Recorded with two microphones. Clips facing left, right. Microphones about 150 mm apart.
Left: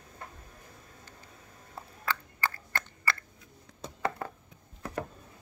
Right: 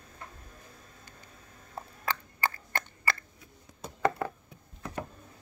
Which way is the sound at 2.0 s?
20° right (ahead or behind).